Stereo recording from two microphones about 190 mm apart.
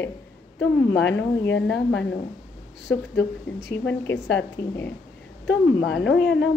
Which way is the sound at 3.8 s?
10° left (ahead or behind).